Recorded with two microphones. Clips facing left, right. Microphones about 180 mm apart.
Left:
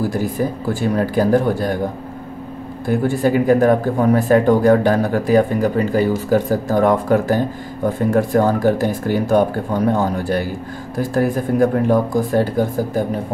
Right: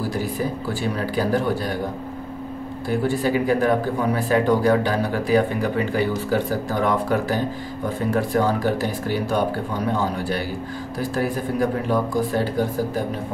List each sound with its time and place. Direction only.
0.7 s speech: 50° left (ahead or behind)
2.9 s speech: 50° left (ahead or behind)